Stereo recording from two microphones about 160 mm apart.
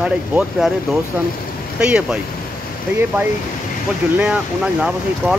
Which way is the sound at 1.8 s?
5° right (ahead or behind).